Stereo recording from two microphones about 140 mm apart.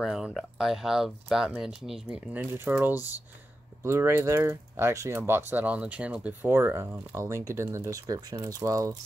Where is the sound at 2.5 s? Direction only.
15° right (ahead or behind).